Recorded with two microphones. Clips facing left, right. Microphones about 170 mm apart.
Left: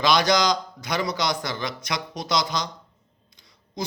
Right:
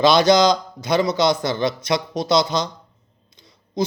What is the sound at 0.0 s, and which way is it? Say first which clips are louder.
A man's voice: right 6 dB; 25° right (ahead or behind).